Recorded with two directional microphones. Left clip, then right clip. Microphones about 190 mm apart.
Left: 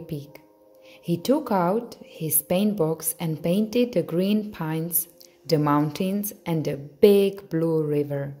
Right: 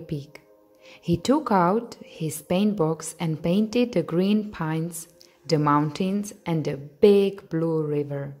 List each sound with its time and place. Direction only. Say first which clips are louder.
0.0 s a woman's voice: right 1 dB; 15° right (ahead or behind)